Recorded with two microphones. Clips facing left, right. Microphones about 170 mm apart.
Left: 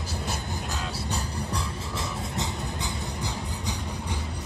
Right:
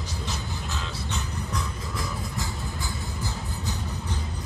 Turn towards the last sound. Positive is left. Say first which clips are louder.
# left 1 dB
turn(degrees=15)  # may be behind; listen again after turning